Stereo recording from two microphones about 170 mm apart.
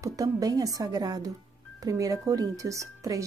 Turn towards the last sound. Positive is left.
turn(degrees=-20)  # may be behind; listen again after turning